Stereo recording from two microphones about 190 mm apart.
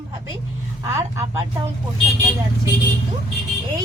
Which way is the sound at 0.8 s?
15° right (ahead or behind).